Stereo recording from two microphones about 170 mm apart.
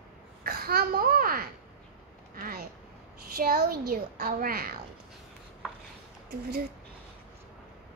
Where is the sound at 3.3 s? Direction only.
60° right (ahead or behind).